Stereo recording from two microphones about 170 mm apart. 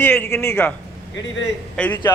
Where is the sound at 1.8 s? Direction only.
10° left (ahead or behind).